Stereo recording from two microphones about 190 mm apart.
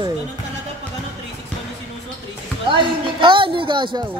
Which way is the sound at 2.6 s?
25° right (ahead or behind).